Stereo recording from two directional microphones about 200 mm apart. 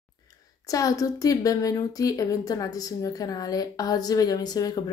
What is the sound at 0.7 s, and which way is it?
Speech, 15° left (ahead or behind).